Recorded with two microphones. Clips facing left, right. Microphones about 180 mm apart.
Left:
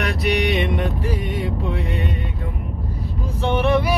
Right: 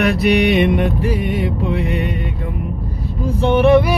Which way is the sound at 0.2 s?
60° right (ahead or behind).